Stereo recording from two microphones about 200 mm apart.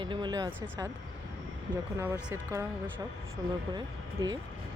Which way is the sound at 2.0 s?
10° right (ahead or behind).